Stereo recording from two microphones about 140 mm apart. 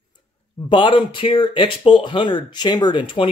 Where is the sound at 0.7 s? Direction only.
35° left (ahead or behind).